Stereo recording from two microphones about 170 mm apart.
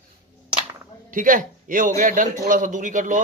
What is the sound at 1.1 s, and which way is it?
A man's voice, 50° right (ahead or behind).